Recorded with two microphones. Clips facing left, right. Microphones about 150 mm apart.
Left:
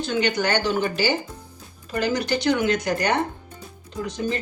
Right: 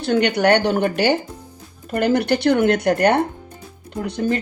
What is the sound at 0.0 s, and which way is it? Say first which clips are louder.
Speech: right 6 dB; 65° right (ahead or behind).